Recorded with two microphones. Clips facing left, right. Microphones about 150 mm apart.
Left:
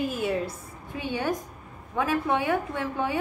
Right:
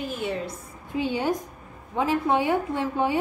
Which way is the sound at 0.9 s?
25° right (ahead or behind).